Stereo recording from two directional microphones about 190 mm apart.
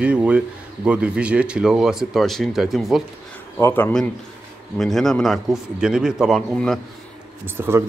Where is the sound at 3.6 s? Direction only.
10° left (ahead or behind).